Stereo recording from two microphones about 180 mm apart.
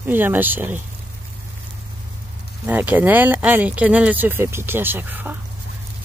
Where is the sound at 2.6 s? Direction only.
10° right (ahead or behind).